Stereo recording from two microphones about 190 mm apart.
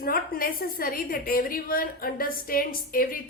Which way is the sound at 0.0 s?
50° left (ahead or behind).